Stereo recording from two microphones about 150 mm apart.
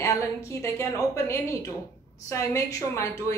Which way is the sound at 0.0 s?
20° left (ahead or behind).